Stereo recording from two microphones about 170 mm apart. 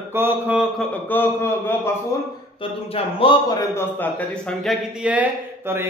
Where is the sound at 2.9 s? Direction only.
30° left (ahead or behind).